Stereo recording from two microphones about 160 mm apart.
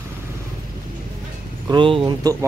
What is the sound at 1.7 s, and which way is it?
Speech, 30° right (ahead or behind).